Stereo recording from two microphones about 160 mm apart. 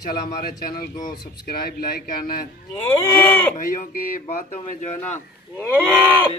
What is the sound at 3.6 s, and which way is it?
Speech, 60° left (ahead or behind).